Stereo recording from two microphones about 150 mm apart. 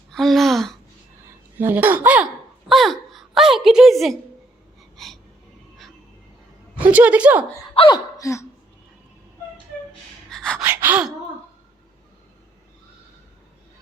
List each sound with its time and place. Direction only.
0.1 s a sound: centre (ahead or behind)
1.5 s speech: 10° right (ahead or behind)
2.6 s a sound: centre (ahead or behind)
4.9 s music: centre (ahead or behind)
6.8 s speech: 10° right (ahead or behind)
7.8 s speech: 30° left (ahead or behind)
10.2 s gasp: 5° left (ahead or behind)
10.6 s gasp: 15° right (ahead or behind)